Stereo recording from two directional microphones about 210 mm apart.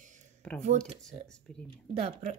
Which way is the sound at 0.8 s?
5° left (ahead or behind).